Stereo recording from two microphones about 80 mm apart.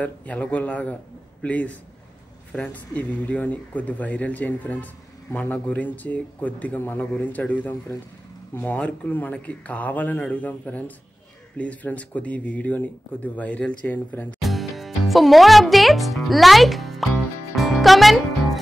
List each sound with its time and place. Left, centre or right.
0.0 s a man's voice: centre
8.7 s speech: centre
14.4 s music: centre